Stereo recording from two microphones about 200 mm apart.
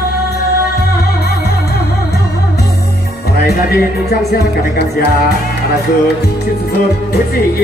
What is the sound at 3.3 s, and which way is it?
Music, 50° left (ahead or behind).